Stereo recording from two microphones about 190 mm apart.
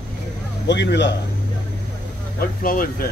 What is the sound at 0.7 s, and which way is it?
Speech, 65° left (ahead or behind).